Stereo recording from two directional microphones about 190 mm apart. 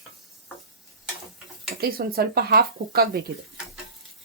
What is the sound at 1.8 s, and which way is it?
Speech, 55° right (ahead or behind).